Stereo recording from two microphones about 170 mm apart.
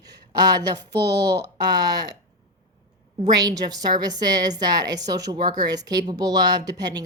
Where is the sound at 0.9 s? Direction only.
20° right (ahead or behind).